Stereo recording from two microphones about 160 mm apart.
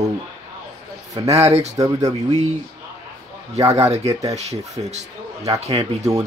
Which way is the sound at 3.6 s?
20° right (ahead or behind).